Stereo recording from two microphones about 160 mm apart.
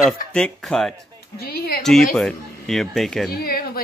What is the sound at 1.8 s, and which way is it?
Speech, centre (ahead or behind).